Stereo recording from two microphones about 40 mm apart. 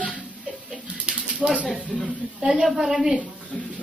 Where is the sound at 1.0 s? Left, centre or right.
Right.